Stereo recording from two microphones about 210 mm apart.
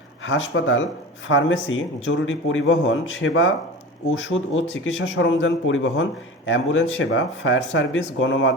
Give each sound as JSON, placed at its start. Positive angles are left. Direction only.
{"t": 0.3, "sound": "speech", "side_deg": 65}